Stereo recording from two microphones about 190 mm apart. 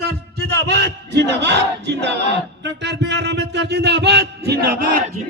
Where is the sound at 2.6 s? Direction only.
65° right (ahead or behind).